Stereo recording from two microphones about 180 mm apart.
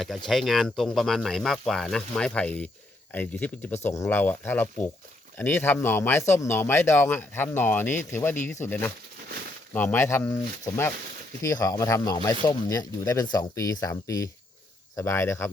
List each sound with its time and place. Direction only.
0.3 s speech: centre (ahead or behind)